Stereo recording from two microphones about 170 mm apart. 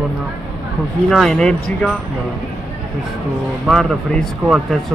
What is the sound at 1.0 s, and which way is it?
Speech, centre (ahead or behind).